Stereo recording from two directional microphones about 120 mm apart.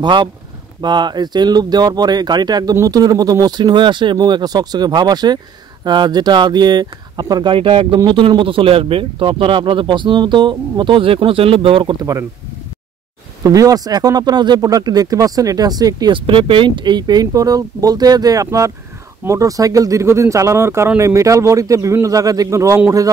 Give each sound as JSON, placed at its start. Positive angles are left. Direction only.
{"t": 0.0, "sound": "speech", "side_deg": -40}
{"t": 7.5, "sound": "speech", "side_deg": -50}
{"t": 13.4, "sound": "speech", "side_deg": -30}
{"t": 16.1, "sound": "a man's voice", "side_deg": -50}